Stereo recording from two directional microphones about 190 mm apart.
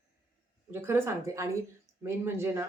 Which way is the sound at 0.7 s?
15° right (ahead or behind).